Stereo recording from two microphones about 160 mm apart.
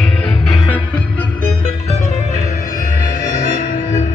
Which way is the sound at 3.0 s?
55° left (ahead or behind).